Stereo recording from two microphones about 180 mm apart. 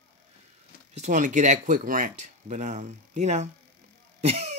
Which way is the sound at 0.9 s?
45° right (ahead or behind).